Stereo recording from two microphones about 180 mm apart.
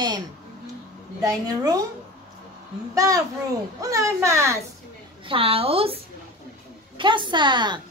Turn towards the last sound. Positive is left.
turn(degrees=-25)  # may be behind; listen again after turning